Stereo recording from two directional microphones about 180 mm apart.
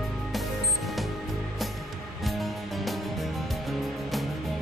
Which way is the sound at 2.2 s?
Centre (ahead or behind).